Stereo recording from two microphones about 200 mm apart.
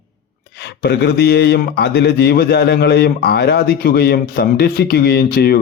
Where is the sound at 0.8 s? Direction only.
55° left (ahead or behind).